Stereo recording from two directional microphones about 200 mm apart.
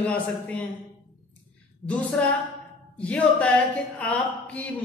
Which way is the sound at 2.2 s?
5° left (ahead or behind).